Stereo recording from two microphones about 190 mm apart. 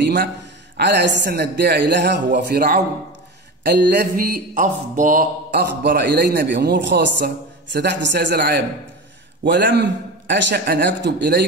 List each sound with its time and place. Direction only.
0.7 s a man's voice: 60° right (ahead or behind)
4.6 s speech: 40° right (ahead or behind)
5.5 s a man's voice: 60° right (ahead or behind)